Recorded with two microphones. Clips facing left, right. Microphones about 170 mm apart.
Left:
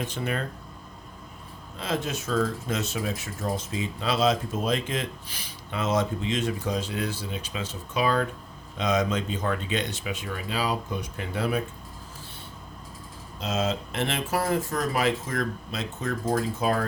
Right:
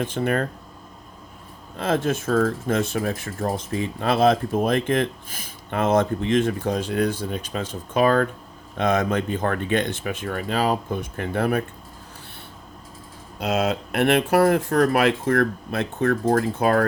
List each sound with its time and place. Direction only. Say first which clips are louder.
0.0 s speech: right 7 dB; 50° right (ahead or behind)
1.7 s speech: right 7 dB; 55° right (ahead or behind)
13.4 s speech: right 5 dB; 65° right (ahead or behind)